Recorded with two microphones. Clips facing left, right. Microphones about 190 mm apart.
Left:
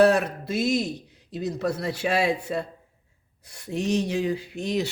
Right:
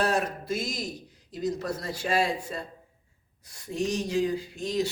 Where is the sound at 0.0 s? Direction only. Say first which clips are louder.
Left 8 dB; 65° left (ahead or behind).